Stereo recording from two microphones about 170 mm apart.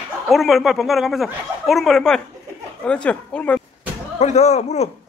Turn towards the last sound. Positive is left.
turn(degrees=40)  # may be behind; listen again after turning